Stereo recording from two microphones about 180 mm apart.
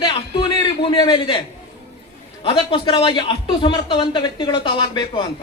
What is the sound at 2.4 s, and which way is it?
A man's voice, 30° left (ahead or behind).